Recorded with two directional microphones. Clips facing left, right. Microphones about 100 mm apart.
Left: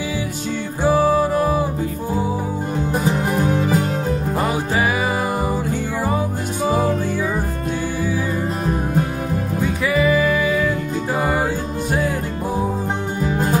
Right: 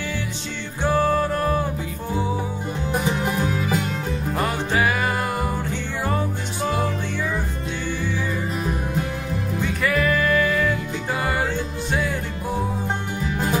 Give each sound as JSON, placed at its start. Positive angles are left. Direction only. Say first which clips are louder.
{"t": 0.8, "sound": "music", "louder": "left 4 dB", "side_deg": 10}
{"t": 3.3, "sound": "music", "louder": "left 5 dB", "side_deg": 35}
{"t": 4.4, "sound": "music", "louder": "even", "side_deg": 5}
{"t": 9.6, "sound": "music", "louder": "left 3 dB", "side_deg": 0}